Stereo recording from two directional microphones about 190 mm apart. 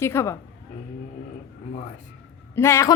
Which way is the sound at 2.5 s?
15° left (ahead or behind).